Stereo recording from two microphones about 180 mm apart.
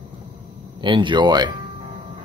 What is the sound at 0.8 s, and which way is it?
Speech, 25° right (ahead or behind).